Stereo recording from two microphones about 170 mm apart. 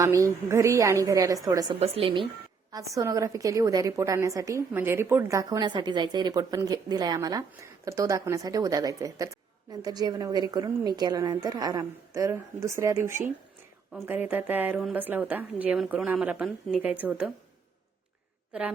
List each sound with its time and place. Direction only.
0.0 s a woman's voice: 20° right (ahead or behind)
1.8 s speech: 30° right (ahead or behind)
2.7 s a woman's voice: 20° right (ahead or behind)